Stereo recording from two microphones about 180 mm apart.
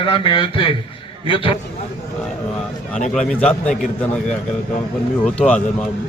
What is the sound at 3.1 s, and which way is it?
A man's voice, 5° left (ahead or behind).